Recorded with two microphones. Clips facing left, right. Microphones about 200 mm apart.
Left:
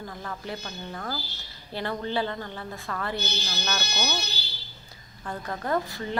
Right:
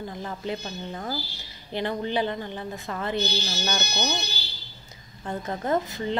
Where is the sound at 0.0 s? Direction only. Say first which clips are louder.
Right 4 dB; 20° right (ahead or behind).